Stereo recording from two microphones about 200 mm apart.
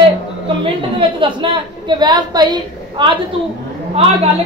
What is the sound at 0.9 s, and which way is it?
A woman's voice, 25° right (ahead or behind).